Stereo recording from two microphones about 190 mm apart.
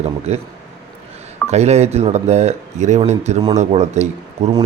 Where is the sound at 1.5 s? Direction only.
35° right (ahead or behind).